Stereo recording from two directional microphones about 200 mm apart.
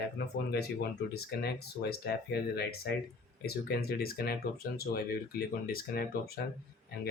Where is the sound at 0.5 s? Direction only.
55° left (ahead or behind).